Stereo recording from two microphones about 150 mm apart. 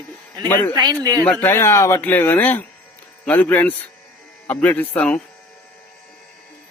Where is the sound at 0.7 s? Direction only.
25° right (ahead or behind).